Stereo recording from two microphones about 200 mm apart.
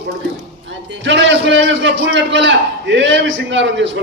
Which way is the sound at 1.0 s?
65° right (ahead or behind).